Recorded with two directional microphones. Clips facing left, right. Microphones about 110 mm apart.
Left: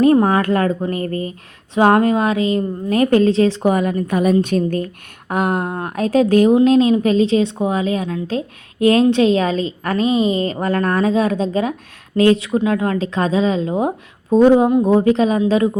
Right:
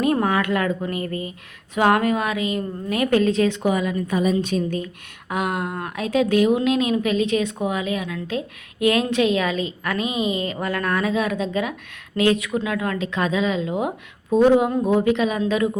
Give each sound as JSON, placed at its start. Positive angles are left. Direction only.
{"t": 0.0, "sound": "a woman's voice", "side_deg": 35}